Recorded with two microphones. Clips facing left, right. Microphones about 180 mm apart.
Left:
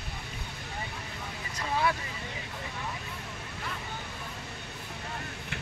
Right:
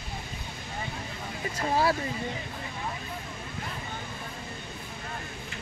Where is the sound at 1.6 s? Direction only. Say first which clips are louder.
Right 4 dB; 35° right (ahead or behind).